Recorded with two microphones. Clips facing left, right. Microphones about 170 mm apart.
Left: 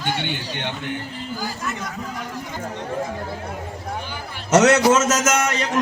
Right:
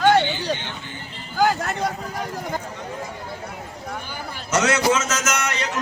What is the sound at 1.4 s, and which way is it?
Speech, 75° right (ahead or behind).